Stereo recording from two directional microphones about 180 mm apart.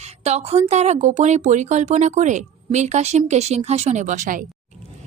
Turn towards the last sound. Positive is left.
turn(degrees=-45)  # may be behind; listen again after turning